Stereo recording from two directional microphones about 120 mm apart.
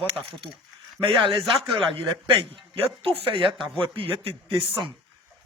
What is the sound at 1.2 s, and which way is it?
Speech, 45° right (ahead or behind).